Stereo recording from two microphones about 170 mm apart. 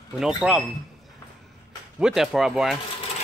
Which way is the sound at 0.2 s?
5° right (ahead or behind).